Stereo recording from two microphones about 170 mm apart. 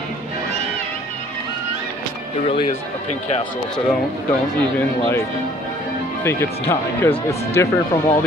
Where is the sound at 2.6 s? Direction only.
45° left (ahead or behind).